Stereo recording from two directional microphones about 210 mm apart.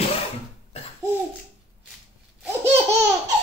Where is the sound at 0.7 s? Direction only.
30° left (ahead or behind).